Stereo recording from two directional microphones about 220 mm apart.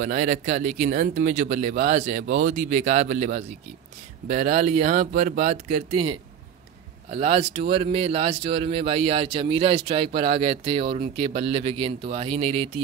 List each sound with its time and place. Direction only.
0.0 s a man's voice: 35° right (ahead or behind)